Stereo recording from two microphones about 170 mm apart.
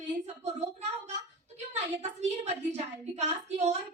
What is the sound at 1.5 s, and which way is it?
A woman's voice, 40° right (ahead or behind).